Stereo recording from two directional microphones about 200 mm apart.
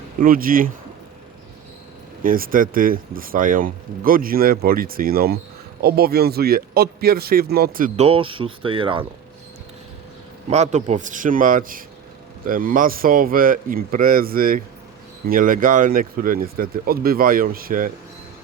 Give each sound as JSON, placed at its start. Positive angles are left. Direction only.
{"t": 0.2, "sound": "speech", "side_deg": -45}
{"t": 2.2, "sound": "speech", "side_deg": -45}
{"t": 10.5, "sound": "a man's voice", "side_deg": -35}